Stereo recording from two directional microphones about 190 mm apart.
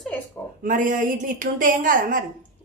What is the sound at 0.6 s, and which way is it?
A woman's voice, 45° right (ahead or behind).